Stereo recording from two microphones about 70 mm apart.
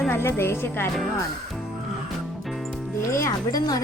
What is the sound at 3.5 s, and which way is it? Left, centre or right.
Speech, left.